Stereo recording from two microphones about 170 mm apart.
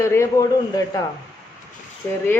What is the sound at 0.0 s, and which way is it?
Speech, 15° left (ahead or behind).